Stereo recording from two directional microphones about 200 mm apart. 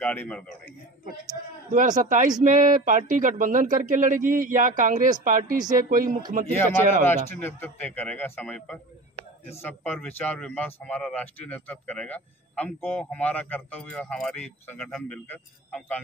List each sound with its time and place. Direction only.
0.0 s a man's voice: 10° left (ahead or behind)
1.7 s speech: 40° right (ahead or behind)
6.7 s speech: 10° left (ahead or behind)